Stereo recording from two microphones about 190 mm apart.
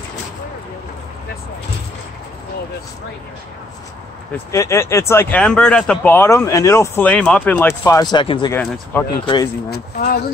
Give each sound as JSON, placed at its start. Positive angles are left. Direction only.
{"t": 4.5, "sound": "speech", "side_deg": 15}
{"t": 8.5, "sound": "speech", "side_deg": 10}
{"t": 9.2, "sound": "speech", "side_deg": 25}